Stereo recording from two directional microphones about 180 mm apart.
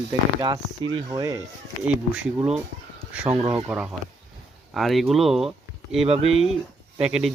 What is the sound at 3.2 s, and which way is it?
Speech, 25° right (ahead or behind).